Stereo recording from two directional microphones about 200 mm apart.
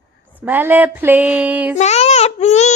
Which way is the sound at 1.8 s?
35° left (ahead or behind).